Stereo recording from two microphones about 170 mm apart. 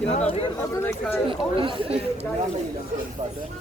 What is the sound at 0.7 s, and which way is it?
Speech, 15° left (ahead or behind).